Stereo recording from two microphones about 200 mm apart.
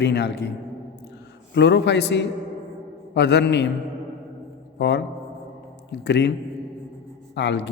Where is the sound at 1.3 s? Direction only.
60° left (ahead or behind).